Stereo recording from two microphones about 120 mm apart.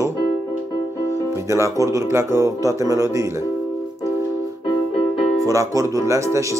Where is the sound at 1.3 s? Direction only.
25° right (ahead or behind).